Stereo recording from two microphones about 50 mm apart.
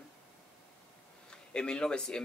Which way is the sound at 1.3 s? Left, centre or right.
Centre.